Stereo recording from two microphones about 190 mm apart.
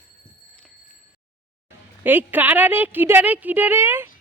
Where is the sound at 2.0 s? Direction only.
10° right (ahead or behind).